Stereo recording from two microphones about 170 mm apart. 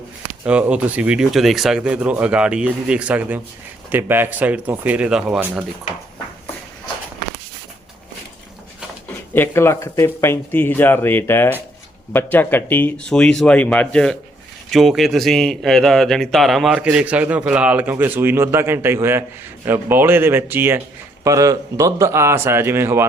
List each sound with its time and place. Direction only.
0.4 s speech: 5° right (ahead or behind)
9.3 s speech: 15° left (ahead or behind); by 23.0 s 15° right (ahead or behind)